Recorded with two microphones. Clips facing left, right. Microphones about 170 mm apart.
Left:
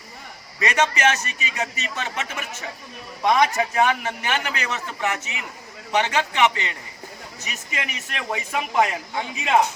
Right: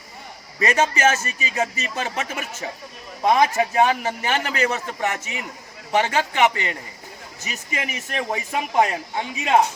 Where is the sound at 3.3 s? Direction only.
30° right (ahead or behind).